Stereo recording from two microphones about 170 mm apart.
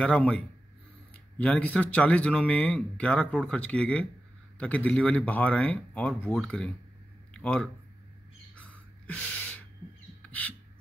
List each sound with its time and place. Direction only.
0.0 s speech: 5° left (ahead or behind)
8.5 s gasp: 10° left (ahead or behind)
10.2 s bird: 10° left (ahead or behind)